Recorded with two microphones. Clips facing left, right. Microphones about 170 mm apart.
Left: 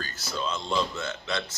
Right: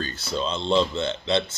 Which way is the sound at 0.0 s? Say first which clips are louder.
Right 5 dB; 25° right (ahead or behind).